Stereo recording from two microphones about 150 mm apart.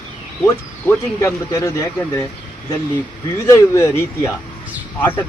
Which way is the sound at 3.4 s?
20° left (ahead or behind).